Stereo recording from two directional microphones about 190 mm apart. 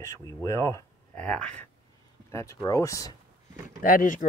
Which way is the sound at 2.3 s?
15° left (ahead or behind).